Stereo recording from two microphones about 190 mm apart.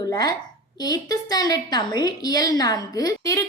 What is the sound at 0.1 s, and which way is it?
A woman's voice, 20° left (ahead or behind).